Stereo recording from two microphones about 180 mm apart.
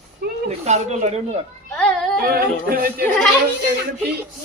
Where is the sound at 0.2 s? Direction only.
60° right (ahead or behind).